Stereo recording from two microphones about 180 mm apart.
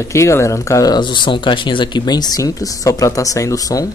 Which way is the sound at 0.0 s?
15° left (ahead or behind).